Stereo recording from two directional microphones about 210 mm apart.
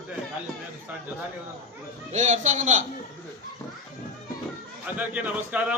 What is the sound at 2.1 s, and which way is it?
Speech, 35° right (ahead or behind).